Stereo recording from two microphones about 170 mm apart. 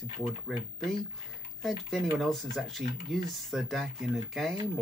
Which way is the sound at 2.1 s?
Centre (ahead or behind).